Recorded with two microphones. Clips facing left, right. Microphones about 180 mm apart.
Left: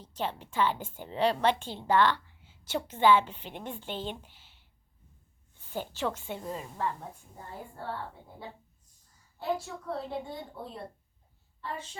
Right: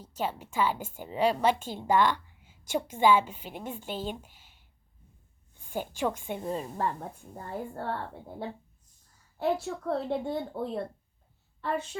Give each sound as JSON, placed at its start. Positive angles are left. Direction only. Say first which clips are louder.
{"t": 0.0, "sound": "a woman's voice", "louder": "right 2 dB", "side_deg": -10}
{"t": 6.7, "sound": "a woman's voice", "louder": "right 2 dB", "side_deg": -40}
{"t": 7.3, "sound": "a woman's voice", "louder": "right 9 dB", "side_deg": -60}
{"t": 9.4, "sound": "a woman's voice", "louder": "right 4 dB", "side_deg": -60}